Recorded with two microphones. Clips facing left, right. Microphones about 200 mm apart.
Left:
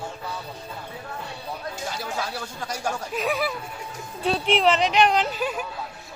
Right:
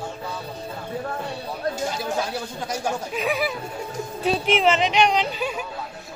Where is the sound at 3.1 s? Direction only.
Centre (ahead or behind).